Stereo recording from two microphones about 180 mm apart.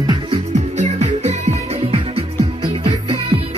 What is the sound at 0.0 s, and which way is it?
Music, 25° right (ahead or behind).